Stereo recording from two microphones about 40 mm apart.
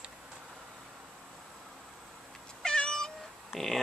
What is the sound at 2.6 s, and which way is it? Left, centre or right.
Cat, centre.